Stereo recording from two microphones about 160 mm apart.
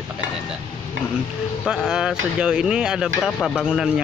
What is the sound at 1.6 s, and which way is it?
Speech, 5° right (ahead or behind).